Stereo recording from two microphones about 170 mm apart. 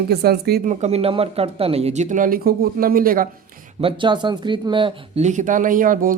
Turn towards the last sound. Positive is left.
turn(degrees=-55)  # may be behind; listen again after turning